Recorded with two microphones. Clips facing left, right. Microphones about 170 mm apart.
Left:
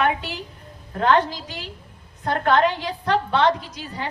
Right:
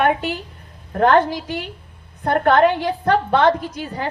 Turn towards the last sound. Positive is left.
turn(degrees=-50)  # may be behind; listen again after turning